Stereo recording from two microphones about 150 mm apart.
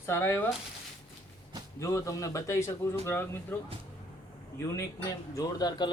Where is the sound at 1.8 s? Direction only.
20° left (ahead or behind).